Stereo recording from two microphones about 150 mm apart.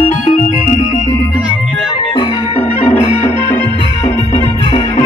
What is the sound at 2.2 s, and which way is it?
Music, 40° left (ahead or behind).